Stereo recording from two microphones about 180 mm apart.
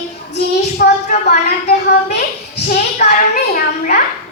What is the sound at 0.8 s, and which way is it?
Speech, 60° left (ahead or behind).